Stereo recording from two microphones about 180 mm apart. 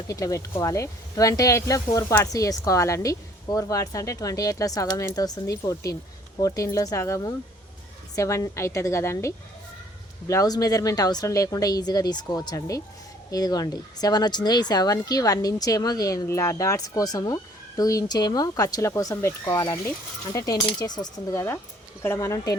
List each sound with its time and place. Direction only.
0.1 s speech: 20° left (ahead or behind)